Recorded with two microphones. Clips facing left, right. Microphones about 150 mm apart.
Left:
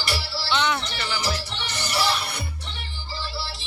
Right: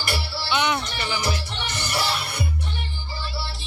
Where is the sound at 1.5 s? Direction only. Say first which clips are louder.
Even; 50° right (ahead or behind).